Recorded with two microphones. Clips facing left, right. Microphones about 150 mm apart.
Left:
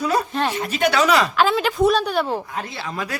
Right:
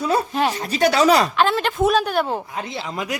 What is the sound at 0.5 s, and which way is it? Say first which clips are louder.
Speech: even; 35° right (ahead or behind).